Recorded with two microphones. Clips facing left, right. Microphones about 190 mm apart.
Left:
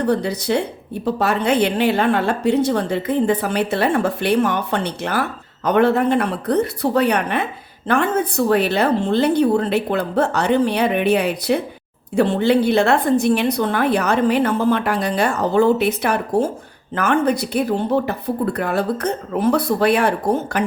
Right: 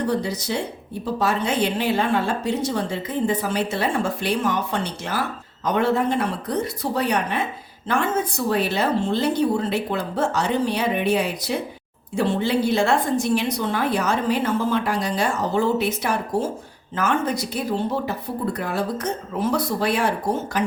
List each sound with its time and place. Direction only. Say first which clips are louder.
0.0 s a woman's voice: left 4 dB; 60° left (ahead or behind)